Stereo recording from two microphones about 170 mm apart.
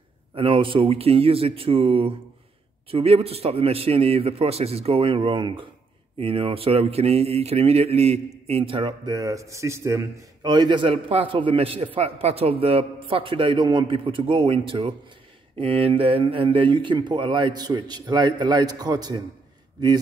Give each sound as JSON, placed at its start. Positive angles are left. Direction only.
{"t": 0.3, "sound": "a man's voice", "side_deg": -30}